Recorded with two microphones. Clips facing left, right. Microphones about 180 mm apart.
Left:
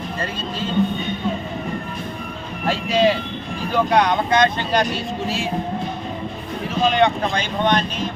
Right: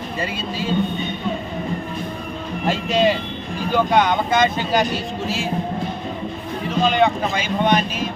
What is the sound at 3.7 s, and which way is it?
Speech, centre (ahead or behind).